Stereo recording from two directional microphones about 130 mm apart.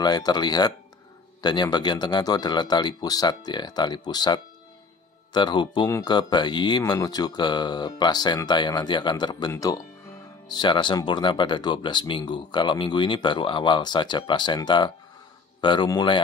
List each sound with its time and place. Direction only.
0.0 s speech: 30° left (ahead or behind)